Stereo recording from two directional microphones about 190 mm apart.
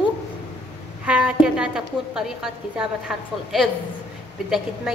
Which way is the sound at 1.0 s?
5° right (ahead or behind).